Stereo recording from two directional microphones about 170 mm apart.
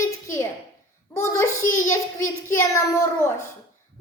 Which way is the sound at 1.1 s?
15° left (ahead or behind).